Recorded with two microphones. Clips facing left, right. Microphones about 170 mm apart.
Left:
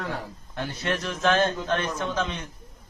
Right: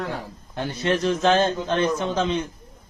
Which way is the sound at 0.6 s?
25° right (ahead or behind).